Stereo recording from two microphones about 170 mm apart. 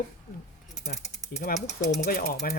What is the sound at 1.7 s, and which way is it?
Speech, 40° left (ahead or behind).